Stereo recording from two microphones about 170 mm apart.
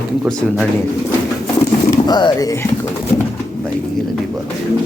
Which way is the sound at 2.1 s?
25° left (ahead or behind).